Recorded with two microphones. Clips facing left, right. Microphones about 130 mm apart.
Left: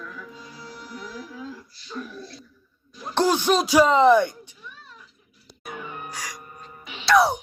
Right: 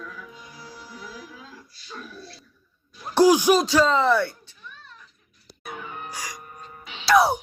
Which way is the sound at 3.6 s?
15° left (ahead or behind).